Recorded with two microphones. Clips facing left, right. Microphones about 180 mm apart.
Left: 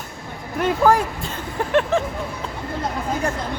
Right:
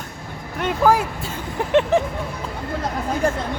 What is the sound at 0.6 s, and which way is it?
Speech, 5° right (ahead or behind).